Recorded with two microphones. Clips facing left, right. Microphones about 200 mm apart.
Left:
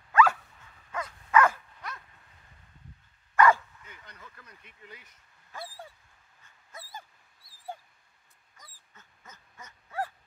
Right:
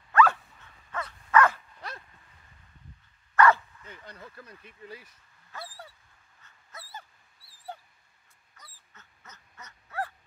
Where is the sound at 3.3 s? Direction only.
10° left (ahead or behind).